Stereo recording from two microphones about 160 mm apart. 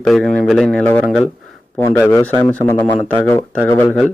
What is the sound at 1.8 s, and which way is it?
Speech, 15° left (ahead or behind).